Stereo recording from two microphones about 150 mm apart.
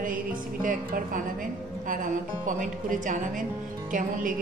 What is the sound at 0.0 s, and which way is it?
A woman's voice, 65° right (ahead or behind).